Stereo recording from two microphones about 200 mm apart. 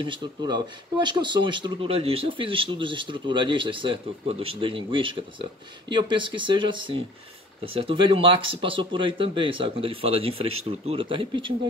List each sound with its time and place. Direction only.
0.0 s speech: 25° right (ahead or behind)